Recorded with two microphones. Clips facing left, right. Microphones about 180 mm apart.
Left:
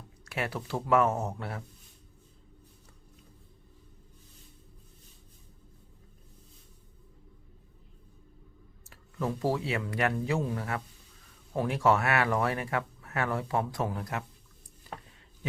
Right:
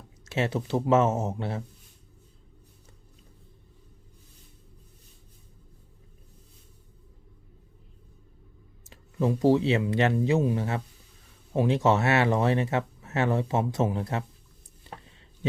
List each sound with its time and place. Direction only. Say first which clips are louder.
0.3 s speech: right 6 dB; 25° right (ahead or behind)
8.8 s speech: right 6 dB; 20° right (ahead or behind)